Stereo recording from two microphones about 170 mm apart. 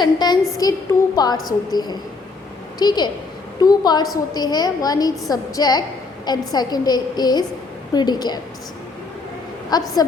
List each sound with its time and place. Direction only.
0.0 s a woman's voice: 25° left (ahead or behind)
9.7 s a woman's voice: 25° left (ahead or behind)